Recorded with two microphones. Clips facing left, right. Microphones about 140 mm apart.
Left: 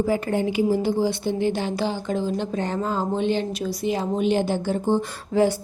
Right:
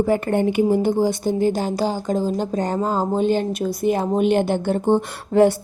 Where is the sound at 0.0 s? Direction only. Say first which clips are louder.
Right 4 dB; 55° right (ahead or behind).